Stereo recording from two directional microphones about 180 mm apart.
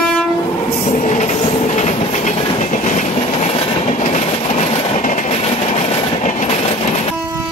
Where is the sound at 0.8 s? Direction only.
45° left (ahead or behind).